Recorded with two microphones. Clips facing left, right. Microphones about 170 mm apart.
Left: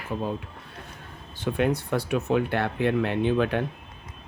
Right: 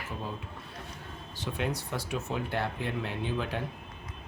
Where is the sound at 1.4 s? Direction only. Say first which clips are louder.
Left 9 dB; 55° left (ahead or behind).